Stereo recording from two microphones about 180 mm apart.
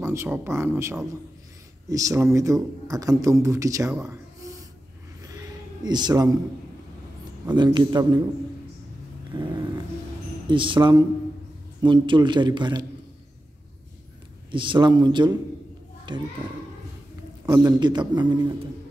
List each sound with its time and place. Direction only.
0.0 s a man's voice: 15° right (ahead or behind)
5.2 s a sound: 20° right (ahead or behind)
7.4 s a man's voice: 25° right (ahead or behind)
10.4 s a man's voice: 25° right (ahead or behind)
14.5 s a man's voice: 25° right (ahead or behind)
17.5 s a man's voice: 25° right (ahead or behind)